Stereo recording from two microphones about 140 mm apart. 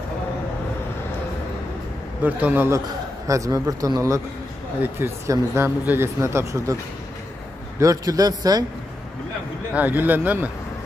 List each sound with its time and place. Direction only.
2.2 s speech: 15° right (ahead or behind)
7.8 s speech: 25° right (ahead or behind)
9.8 s speech: 10° right (ahead or behind)